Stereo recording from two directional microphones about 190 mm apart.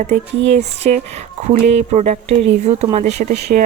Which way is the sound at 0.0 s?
35° right (ahead or behind).